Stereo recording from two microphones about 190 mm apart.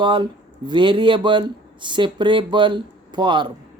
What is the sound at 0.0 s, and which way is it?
A man's voice, 25° right (ahead or behind).